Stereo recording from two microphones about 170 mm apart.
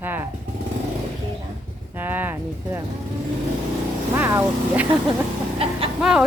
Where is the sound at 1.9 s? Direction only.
10° right (ahead or behind).